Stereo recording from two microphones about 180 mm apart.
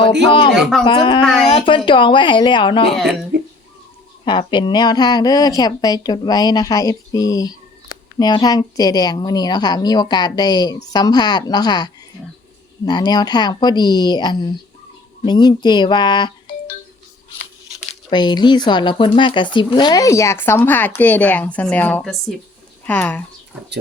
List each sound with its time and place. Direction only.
0.3 s a woman's voice: 30° left (ahead or behind)
0.5 s speech: centre (ahead or behind)
0.9 s a woman's voice: 25° left (ahead or behind)
1.2 s speech: centre (ahead or behind)
1.5 s a woman's voice: 30° left (ahead or behind)
2.9 s speech: centre (ahead or behind)
4.3 s a woman's voice: 25° left (ahead or behind)
18.1 s speech: 25° left (ahead or behind); by 23.2 s 5° left (ahead or behind)